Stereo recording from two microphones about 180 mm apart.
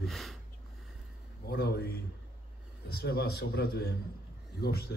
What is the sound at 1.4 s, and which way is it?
Speech, 60° left (ahead or behind).